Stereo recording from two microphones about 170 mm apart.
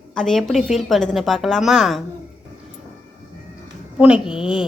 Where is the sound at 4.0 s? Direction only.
5° right (ahead or behind).